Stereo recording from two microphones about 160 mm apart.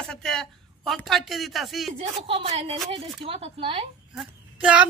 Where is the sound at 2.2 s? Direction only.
35° right (ahead or behind).